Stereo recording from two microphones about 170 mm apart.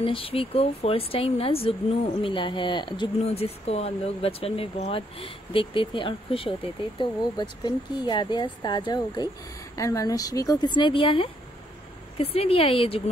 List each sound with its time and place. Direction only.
0.0 s speech: 35° left (ahead or behind)